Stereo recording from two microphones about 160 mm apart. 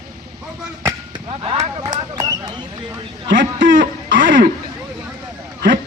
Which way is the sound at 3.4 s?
60° right (ahead or behind).